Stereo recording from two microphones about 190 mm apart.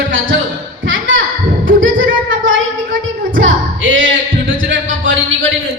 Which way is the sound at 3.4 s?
90° right.